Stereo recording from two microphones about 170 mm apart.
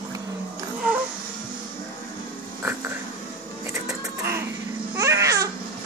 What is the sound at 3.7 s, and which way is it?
Printer, 20° right (ahead or behind).